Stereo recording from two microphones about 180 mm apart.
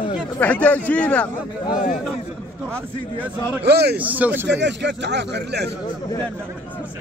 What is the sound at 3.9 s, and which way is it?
Speech, 10° right (ahead or behind).